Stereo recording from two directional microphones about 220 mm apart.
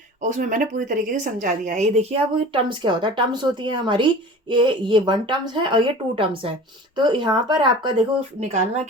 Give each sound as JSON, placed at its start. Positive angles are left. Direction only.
{"t": 0.2, "sound": "a woman's voice", "side_deg": -35}